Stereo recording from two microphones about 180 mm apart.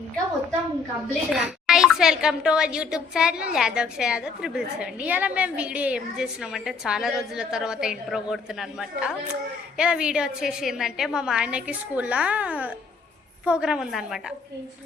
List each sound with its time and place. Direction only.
1.3 s a woman's voice: 5° right (ahead or behind)